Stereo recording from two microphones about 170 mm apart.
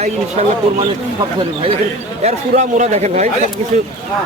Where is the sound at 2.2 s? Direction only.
45° right (ahead or behind).